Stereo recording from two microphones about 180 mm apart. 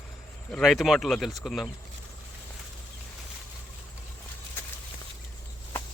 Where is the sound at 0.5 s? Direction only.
Centre (ahead or behind).